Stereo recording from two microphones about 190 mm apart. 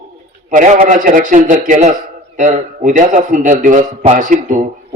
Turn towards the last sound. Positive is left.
turn(degrees=-40)  # may be behind; listen again after turning